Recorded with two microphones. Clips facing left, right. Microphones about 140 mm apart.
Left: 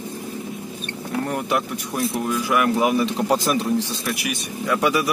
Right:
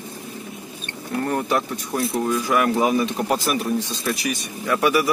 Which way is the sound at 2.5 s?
20° right (ahead or behind).